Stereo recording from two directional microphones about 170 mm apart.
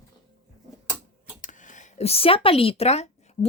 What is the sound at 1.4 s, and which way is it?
A woman's voice, 50° left (ahead or behind).